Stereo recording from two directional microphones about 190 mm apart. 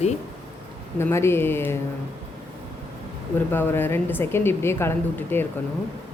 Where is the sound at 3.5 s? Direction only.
10° left (ahead or behind).